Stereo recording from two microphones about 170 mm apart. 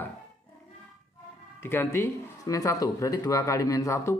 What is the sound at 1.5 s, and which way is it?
Speech, 15° left (ahead or behind).